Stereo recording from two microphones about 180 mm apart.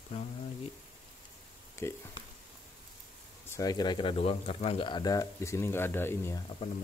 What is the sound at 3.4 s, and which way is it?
Speech, 20° left (ahead or behind).